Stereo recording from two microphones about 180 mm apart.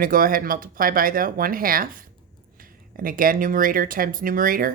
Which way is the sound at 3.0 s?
50° right (ahead or behind).